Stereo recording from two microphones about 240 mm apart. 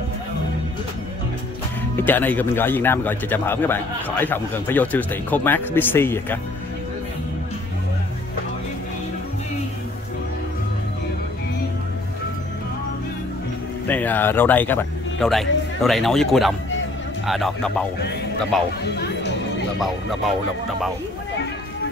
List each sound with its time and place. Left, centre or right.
2.0 s speech: centre
13.8 s speech: centre
19.8 s speech: centre